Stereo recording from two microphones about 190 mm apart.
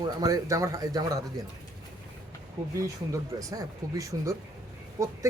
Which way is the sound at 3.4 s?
20° right (ahead or behind).